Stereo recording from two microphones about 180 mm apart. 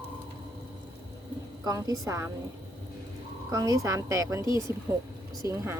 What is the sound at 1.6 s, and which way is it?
Speech, 20° right (ahead or behind).